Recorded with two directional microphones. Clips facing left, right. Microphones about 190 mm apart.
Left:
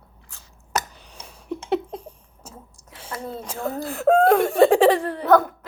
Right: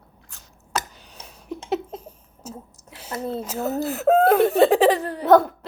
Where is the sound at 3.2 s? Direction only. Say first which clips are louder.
Right 6 dB; 30° right (ahead or behind).